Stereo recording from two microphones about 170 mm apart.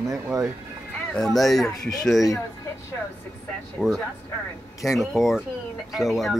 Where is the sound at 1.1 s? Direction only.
Centre (ahead or behind).